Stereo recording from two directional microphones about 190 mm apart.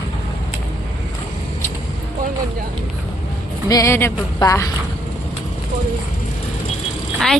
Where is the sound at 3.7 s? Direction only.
15° left (ahead or behind).